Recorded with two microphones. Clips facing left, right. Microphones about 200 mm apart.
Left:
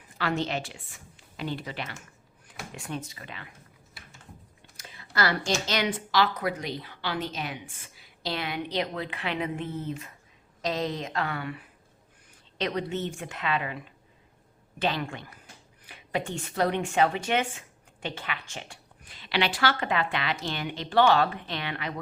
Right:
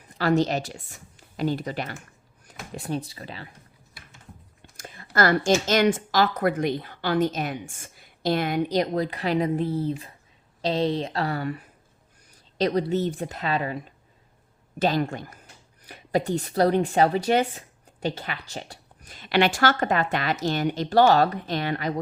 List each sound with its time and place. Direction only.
0.2 s a woman's voice: 40° right (ahead or behind)
4.8 s speech: 50° right (ahead or behind)